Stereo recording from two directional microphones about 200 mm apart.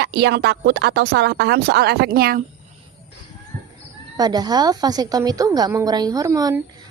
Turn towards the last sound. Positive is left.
turn(degrees=-15)  # may be behind; listen again after turning